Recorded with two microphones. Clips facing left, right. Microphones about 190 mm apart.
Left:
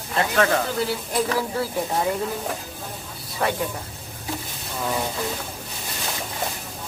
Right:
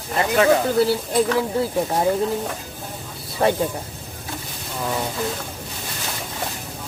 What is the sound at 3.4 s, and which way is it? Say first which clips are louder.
Speech: right 5 dB; 30° right (ahead or behind).